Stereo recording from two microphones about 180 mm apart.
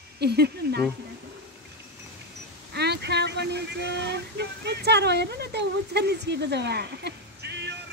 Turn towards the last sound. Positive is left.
turn(degrees=-70)  # may be behind; listen again after turning